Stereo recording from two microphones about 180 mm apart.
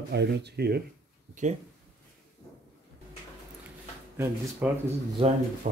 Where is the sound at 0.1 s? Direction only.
70° right (ahead or behind).